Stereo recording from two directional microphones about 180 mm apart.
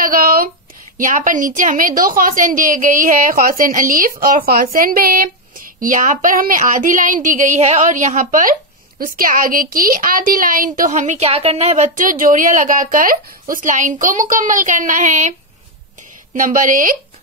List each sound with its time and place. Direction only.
0.0 s a sound: 55° right (ahead or behind)
0.9 s a woman's voice: 45° right (ahead or behind)
16.3 s a woman's voice: 45° right (ahead or behind)